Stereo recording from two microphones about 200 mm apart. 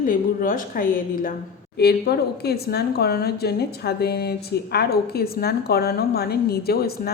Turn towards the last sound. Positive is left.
turn(degrees=50)  # may be behind; listen again after turning